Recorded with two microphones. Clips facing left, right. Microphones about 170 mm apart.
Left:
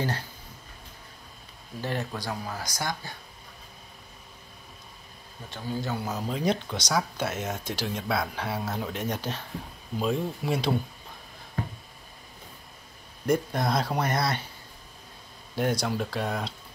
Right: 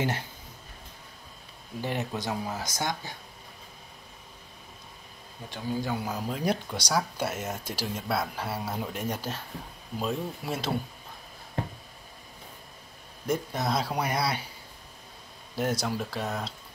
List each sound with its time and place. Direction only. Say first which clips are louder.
1.8 s speech: even; 15° right (ahead or behind)
5.5 s speech: right 1 dB; 15° right (ahead or behind)
13.3 s speech: left 3 dB; 5° right (ahead or behind)
15.5 s speech: left 2 dB; 5° right (ahead or behind)